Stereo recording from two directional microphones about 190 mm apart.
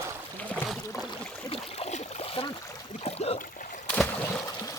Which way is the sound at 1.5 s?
30° left (ahead or behind).